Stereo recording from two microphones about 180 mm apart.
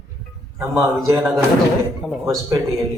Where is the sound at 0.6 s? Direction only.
15° right (ahead or behind).